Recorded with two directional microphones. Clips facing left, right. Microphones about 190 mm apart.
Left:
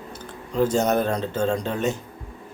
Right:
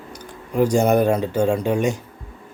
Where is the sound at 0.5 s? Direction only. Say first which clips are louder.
Right 4 dB; 10° right (ahead or behind).